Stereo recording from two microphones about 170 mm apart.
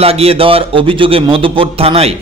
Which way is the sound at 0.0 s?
35° right (ahead or behind).